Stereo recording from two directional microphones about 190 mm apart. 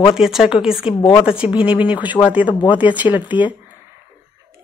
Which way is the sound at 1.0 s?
25° left (ahead or behind).